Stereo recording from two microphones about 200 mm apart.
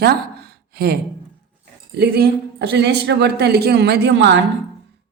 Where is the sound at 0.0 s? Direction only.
50° right (ahead or behind).